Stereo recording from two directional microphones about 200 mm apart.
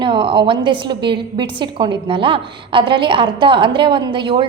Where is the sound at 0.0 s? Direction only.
25° right (ahead or behind).